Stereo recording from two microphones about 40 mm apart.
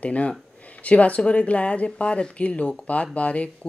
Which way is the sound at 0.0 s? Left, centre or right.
Left.